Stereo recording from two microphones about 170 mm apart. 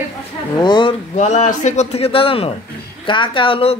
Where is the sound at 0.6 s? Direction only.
25° left (ahead or behind).